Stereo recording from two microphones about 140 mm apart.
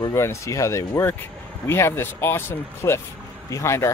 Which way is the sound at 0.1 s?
20° left (ahead or behind).